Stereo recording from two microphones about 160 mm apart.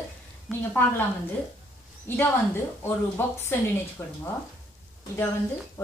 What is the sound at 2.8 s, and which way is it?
Speech, 15° left (ahead or behind).